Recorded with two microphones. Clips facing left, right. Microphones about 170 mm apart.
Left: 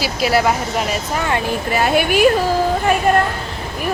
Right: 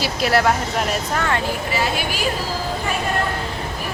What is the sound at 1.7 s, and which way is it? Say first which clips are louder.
Speech: left 11 dB; 55° left (ahead or behind).